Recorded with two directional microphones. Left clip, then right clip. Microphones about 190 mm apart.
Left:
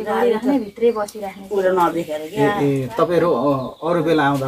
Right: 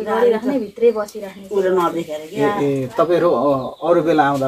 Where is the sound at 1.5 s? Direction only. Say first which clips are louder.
Even; 20° left (ahead or behind).